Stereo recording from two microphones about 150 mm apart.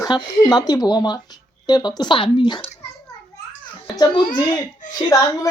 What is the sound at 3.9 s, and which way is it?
Speech, 30° left (ahead or behind).